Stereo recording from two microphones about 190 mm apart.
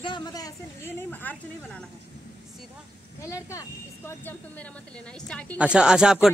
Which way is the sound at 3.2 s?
15° left (ahead or behind).